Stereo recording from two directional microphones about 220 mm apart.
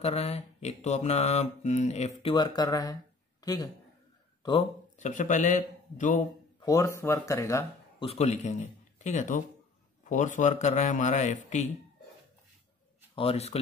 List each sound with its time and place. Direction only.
0.0 s mantra: 30° left (ahead or behind)
2.3 s speech: 20° left (ahead or behind)
4.9 s a man's voice: 35° left (ahead or behind)
6.6 s speech: 15° left (ahead or behind)
8.0 s a man's voice: 30° left (ahead or behind)
13.1 s speech: 25° left (ahead or behind)